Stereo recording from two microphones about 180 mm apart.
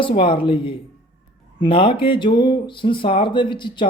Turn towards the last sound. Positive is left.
turn(degrees=25)  # may be behind; listen again after turning